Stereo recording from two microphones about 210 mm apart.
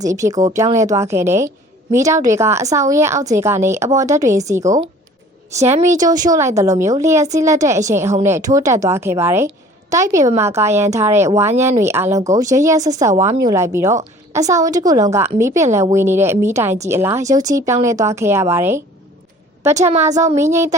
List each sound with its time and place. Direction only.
0.0 s a woman's voice: 15° right (ahead or behind)
5.8 s a woman's voice: 15° right (ahead or behind)
19.9 s a woman's voice: 35° right (ahead or behind)
20.3 s a woman's voice: 15° right (ahead or behind)